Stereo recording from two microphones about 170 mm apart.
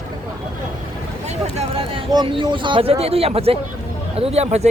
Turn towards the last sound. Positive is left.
turn(degrees=-40)  # may be behind; listen again after turning